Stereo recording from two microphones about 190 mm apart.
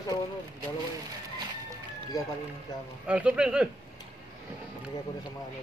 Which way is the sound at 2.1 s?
20° left (ahead or behind).